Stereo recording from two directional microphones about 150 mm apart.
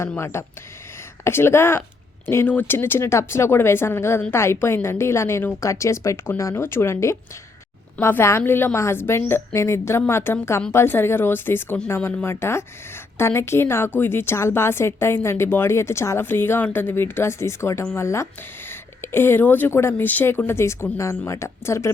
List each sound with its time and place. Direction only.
0.3 s a woman's voice: 20° left (ahead or behind)